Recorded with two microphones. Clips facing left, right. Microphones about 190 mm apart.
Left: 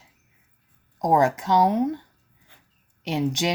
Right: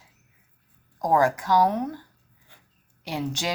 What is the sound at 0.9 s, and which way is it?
A woman's voice, 20° left (ahead or behind).